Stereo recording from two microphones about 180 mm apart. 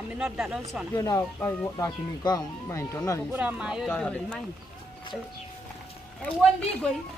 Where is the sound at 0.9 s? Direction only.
20° left (ahead or behind).